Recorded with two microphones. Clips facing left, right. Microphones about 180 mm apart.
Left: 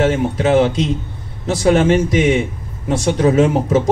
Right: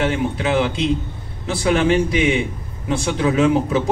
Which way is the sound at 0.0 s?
40° left (ahead or behind).